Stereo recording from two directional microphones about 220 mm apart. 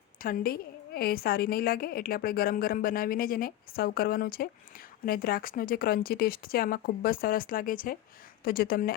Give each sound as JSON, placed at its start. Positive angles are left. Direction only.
{"t": 0.2, "sound": "a woman's voice", "side_deg": 40}